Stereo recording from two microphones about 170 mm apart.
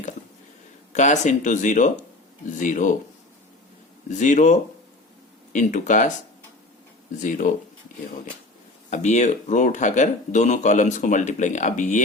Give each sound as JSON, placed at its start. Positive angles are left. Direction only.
{"t": 0.9, "sound": "speech", "side_deg": 45}
{"t": 4.2, "sound": "speech", "side_deg": 50}
{"t": 5.5, "sound": "speech", "side_deg": 50}
{"t": 7.2, "sound": "speech", "side_deg": 50}
{"t": 8.9, "sound": "speech", "side_deg": 45}